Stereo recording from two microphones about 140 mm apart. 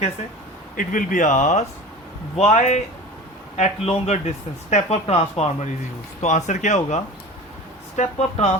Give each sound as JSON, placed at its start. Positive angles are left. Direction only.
{"t": 0.8, "sound": "speech", "side_deg": 70}
{"t": 6.2, "sound": "speech", "side_deg": 60}